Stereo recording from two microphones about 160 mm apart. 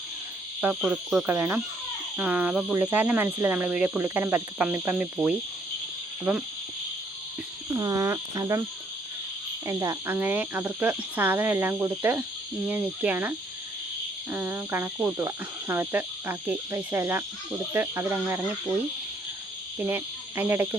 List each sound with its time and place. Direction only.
0.6 s speech: 10° right (ahead or behind)
7.8 s speech: 20° right (ahead or behind)
9.6 s speech: 20° right (ahead or behind)
19.9 s speech: 15° right (ahead or behind)